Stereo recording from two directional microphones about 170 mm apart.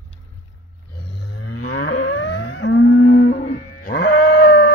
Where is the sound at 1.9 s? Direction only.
90° left.